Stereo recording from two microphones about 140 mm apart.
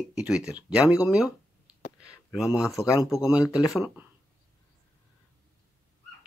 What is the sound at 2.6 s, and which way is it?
Speech, centre (ahead or behind).